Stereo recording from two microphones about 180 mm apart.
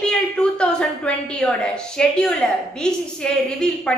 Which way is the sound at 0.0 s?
5° left (ahead or behind).